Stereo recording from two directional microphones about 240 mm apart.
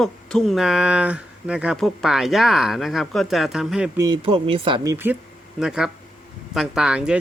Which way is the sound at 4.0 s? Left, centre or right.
Centre.